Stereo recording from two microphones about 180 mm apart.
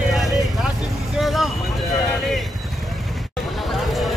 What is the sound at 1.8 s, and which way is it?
Speech, 20° left (ahead or behind).